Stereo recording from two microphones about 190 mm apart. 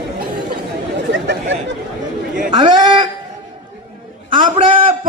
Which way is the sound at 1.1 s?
70° right (ahead or behind).